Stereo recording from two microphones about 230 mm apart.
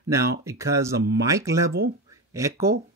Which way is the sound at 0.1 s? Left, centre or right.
Centre.